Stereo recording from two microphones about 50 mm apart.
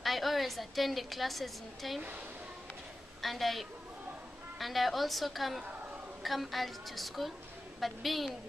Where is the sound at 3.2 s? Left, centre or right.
Centre.